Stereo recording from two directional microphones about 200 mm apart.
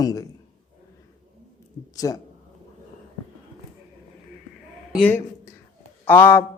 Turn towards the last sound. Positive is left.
turn(degrees=10)  # may be behind; listen again after turning